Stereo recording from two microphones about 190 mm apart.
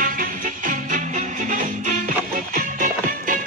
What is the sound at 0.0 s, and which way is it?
Music, 45° right (ahead or behind).